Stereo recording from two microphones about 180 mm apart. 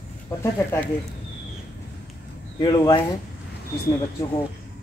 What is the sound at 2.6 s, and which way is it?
Speech, 25° left (ahead or behind).